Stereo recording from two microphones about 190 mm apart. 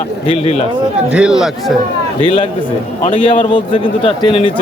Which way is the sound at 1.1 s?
5° right (ahead or behind).